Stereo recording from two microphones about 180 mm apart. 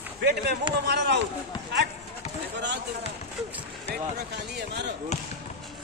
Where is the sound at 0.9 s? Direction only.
70° right (ahead or behind).